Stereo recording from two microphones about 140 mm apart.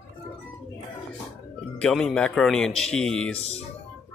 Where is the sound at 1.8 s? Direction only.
5° left (ahead or behind).